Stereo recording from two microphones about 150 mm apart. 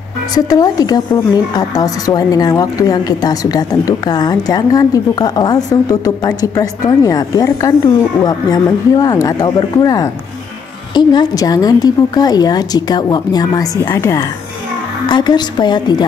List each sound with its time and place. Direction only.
0.3 s speech: 25° left (ahead or behind)